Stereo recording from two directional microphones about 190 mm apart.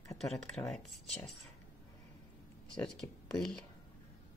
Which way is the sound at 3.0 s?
15° left (ahead or behind).